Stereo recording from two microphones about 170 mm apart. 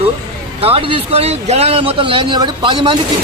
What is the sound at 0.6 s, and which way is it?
Speech, 35° right (ahead or behind).